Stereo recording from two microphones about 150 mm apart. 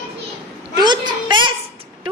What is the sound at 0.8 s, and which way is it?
Speech, 30° right (ahead or behind).